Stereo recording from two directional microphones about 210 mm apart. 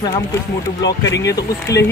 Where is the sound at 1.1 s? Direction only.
55° left (ahead or behind).